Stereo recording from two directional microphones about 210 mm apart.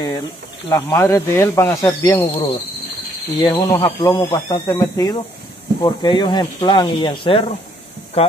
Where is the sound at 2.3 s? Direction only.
25° left (ahead or behind).